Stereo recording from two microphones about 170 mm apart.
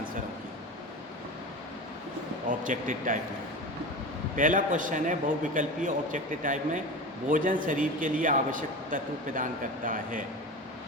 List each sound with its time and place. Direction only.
2.5 s a man's voice: 50° right (ahead or behind)
4.4 s a man's voice: 50° right (ahead or behind)